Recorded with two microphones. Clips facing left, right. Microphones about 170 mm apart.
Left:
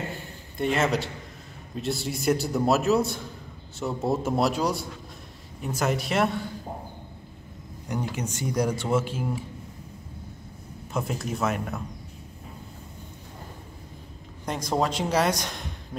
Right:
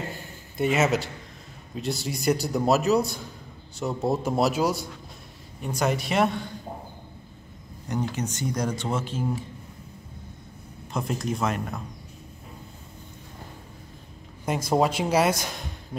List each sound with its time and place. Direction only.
0.6 s a man's voice: 5° right (ahead or behind)
7.9 s speech: 10° left (ahead or behind)
10.9 s speech: 5° left (ahead or behind)
14.4 s a man's voice: 5° right (ahead or behind)